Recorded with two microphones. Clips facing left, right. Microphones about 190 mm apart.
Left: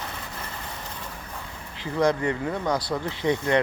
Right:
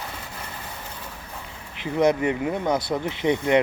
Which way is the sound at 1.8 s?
20° right (ahead or behind).